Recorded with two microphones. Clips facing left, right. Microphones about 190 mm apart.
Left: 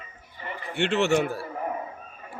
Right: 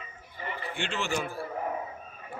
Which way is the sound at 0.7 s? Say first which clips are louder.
Left 10 dB; 70° left (ahead or behind).